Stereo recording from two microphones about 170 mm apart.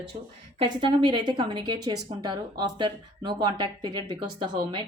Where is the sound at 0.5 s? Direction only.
30° right (ahead or behind).